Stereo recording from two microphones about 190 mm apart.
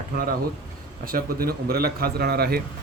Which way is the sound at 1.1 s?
50° right (ahead or behind).